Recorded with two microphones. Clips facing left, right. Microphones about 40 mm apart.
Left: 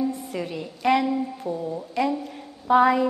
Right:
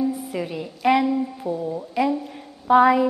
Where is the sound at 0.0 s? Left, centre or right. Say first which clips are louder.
Right 2 dB; centre.